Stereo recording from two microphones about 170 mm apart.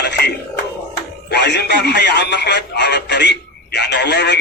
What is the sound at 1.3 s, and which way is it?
Speech, 85° left.